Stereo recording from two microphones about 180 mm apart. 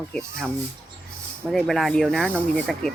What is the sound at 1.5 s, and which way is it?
Speech, centre (ahead or behind).